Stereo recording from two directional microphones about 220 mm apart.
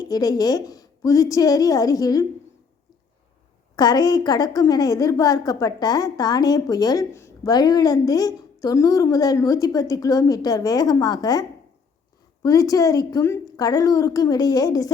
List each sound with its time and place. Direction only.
0.0 s a woman's voice: 15° left (ahead or behind)
3.8 s a woman's voice: 20° left (ahead or behind)